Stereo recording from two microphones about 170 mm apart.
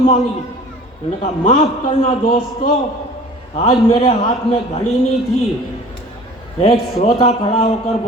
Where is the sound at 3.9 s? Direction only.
30° left (ahead or behind).